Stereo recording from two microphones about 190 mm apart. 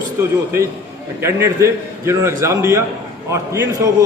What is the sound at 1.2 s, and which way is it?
A man's voice, 15° right (ahead or behind).